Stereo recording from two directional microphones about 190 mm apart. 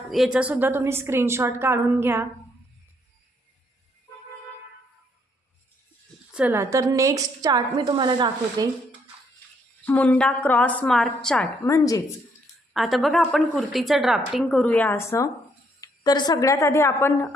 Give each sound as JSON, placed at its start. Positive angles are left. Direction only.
{"t": 0.1, "sound": "a woman's voice", "side_deg": -5}
{"t": 6.3, "sound": "a woman's voice", "side_deg": -10}
{"t": 9.8, "sound": "a woman's voice", "side_deg": 10}
{"t": 11.6, "sound": "a woman's voice", "side_deg": 15}
{"t": 12.7, "sound": "a woman's voice", "side_deg": 0}